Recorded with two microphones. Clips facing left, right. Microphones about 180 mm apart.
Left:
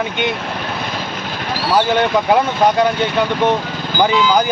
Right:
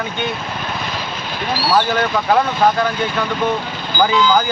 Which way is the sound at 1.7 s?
20° left (ahead or behind).